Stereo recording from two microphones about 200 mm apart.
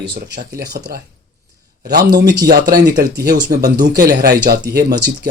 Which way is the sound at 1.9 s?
50° right (ahead or behind).